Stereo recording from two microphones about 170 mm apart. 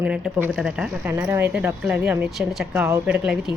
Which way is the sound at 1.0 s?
15° right (ahead or behind).